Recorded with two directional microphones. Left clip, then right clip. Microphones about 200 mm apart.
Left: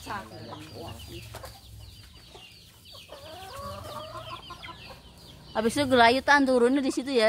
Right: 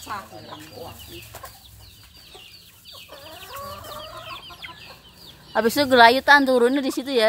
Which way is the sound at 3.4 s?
55° right (ahead or behind).